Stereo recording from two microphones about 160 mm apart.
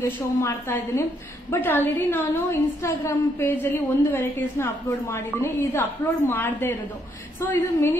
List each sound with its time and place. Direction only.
0.0 s a woman's voice: 15° left (ahead or behind)